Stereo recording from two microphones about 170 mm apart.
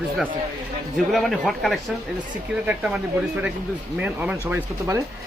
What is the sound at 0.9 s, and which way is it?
A man's voice, centre (ahead or behind).